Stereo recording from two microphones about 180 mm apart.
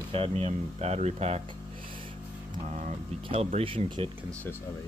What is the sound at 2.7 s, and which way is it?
Speech, 40° right (ahead or behind).